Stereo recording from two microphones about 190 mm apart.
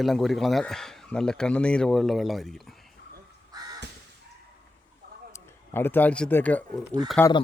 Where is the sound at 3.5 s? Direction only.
20° right (ahead or behind).